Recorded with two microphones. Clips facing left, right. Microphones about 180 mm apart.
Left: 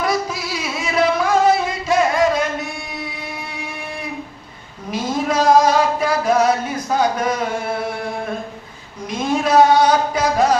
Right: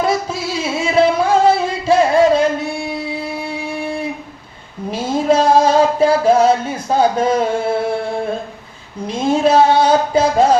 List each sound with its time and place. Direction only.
0.0 s music: 25° right (ahead or behind)
4.9 s music: 30° right (ahead or behind)
9.0 s a sound: 30° right (ahead or behind)